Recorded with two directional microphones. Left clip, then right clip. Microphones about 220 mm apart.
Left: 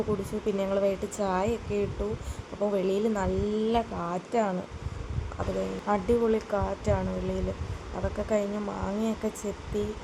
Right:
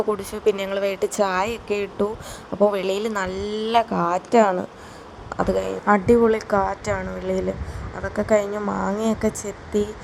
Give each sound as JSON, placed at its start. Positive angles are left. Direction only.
{"t": 0.3, "sound": "a woman's voice", "side_deg": -35}